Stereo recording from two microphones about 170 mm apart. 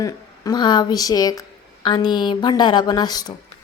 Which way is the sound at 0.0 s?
25° left (ahead or behind).